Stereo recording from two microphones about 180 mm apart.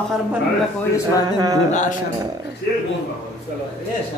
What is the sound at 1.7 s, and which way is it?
Speech, 40° left (ahead or behind).